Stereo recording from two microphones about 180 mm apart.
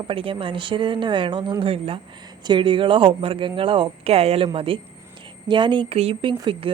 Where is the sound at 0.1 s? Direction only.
30° right (ahead or behind).